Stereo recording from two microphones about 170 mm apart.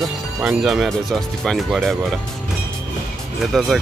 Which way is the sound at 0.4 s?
5° right (ahead or behind).